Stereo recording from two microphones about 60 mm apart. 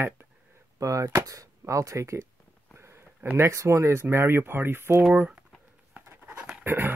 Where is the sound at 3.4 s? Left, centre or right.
Right.